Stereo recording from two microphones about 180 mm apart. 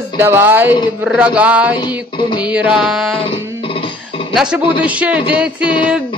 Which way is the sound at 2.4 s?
5° right (ahead or behind).